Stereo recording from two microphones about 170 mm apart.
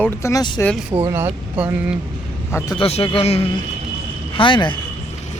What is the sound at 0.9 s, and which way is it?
Speech, 25° right (ahead or behind).